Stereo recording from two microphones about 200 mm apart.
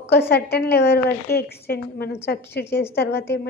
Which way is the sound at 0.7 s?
55° left (ahead or behind).